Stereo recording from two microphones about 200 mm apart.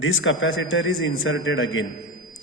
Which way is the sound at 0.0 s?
80° left.